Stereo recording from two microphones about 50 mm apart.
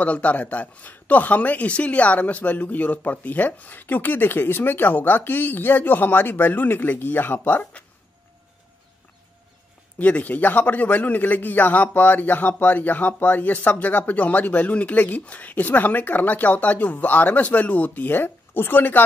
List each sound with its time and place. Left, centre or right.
0.0 s a man's voice: left
9.9 s a man's voice: left
18.1 s a woman's voice: left